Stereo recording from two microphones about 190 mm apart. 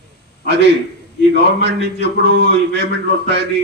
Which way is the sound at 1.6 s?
65° right (ahead or behind).